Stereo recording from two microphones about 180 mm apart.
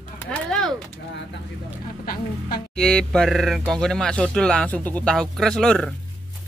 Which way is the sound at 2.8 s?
5° left (ahead or behind).